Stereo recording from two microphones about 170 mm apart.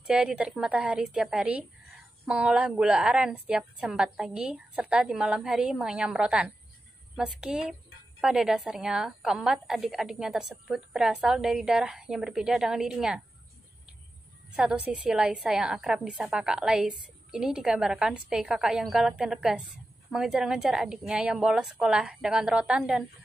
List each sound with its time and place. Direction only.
0.0 s a woman's voice: 5° right (ahead or behind)
14.5 s a woman's voice: 5° right (ahead or behind)